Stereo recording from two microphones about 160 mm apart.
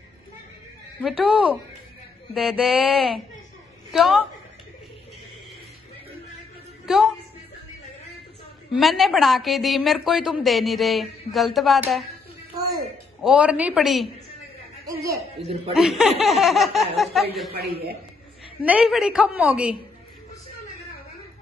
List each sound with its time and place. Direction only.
1.0 s a woman's voice: 5° right (ahead or behind)
6.9 s a woman's voice: centre (ahead or behind)
8.7 s a woman's voice: centre (ahead or behind)
13.2 s a woman's voice: 5° right (ahead or behind)
15.7 s a woman's voice: centre (ahead or behind)
17.6 s a man's voice: 80° right
18.6 s a woman's voice: 10° right (ahead or behind)